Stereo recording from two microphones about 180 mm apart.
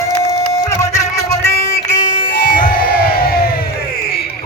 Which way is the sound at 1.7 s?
45° left (ahead or behind).